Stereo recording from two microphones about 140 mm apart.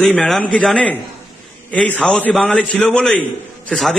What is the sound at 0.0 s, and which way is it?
A man's voice, 5° left (ahead or behind).